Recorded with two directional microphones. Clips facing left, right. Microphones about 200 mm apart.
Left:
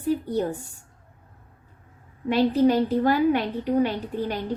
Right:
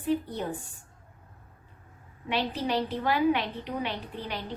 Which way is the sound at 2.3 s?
45° left (ahead or behind).